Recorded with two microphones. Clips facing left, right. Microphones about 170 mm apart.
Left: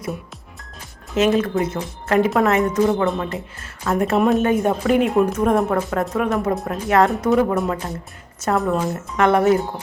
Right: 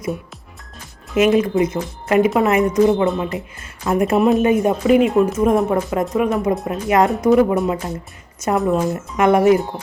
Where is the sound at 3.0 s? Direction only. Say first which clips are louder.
Right 2 dB; centre (ahead or behind).